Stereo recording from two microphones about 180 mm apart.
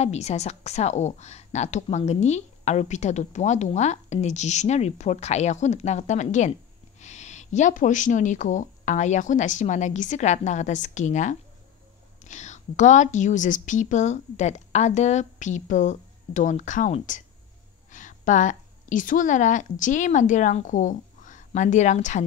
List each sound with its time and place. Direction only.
0.0 s a woman's voice: 35° left (ahead or behind)